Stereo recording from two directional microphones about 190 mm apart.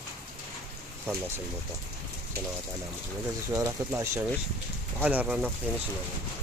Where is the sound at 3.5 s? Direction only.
15° right (ahead or behind).